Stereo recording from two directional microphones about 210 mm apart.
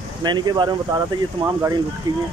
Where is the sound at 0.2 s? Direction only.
20° right (ahead or behind).